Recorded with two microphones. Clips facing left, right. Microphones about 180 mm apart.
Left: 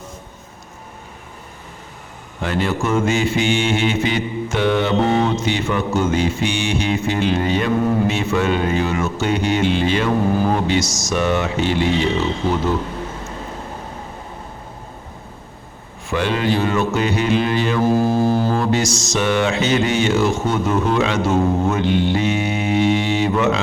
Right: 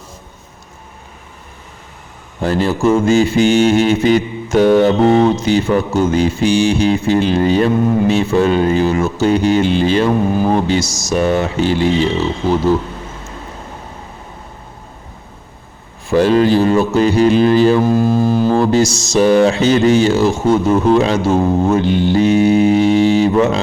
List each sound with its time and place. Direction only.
2.4 s music: 35° right (ahead or behind)
16.0 s music: 35° right (ahead or behind)
17.8 s music: 15° left (ahead or behind)
18.5 s music: 30° right (ahead or behind)